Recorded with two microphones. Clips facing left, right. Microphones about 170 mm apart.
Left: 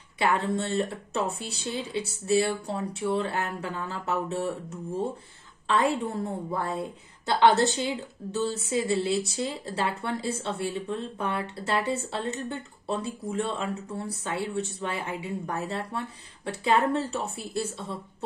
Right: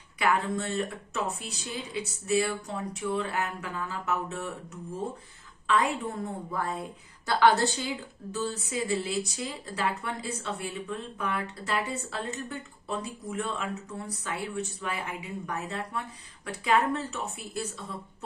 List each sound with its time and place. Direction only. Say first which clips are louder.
0.2 s a woman's voice: left 2 dB; 30° left (ahead or behind)
7.2 s speech: left 2 dB; 20° left (ahead or behind)